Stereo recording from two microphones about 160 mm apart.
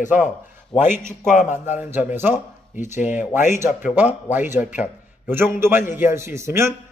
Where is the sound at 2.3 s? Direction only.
50° left (ahead or behind).